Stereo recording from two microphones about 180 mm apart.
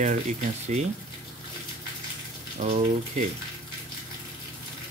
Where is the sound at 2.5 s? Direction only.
35° right (ahead or behind).